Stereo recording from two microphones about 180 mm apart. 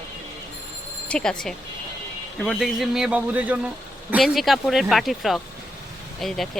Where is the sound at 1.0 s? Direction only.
5° left (ahead or behind).